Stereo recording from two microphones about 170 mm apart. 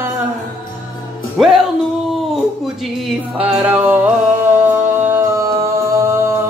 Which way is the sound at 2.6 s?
5° right (ahead or behind).